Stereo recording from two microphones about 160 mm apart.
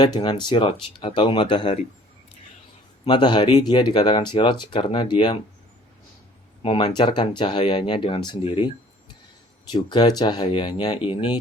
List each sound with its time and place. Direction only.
0.0 s speech: 25° left (ahead or behind)
3.0 s speech: 30° left (ahead or behind)
6.6 s speech: 35° left (ahead or behind)
9.7 s speech: 25° left (ahead or behind)